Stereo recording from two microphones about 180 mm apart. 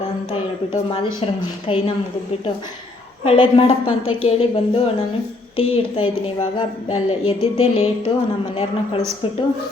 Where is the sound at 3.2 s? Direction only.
30° left (ahead or behind).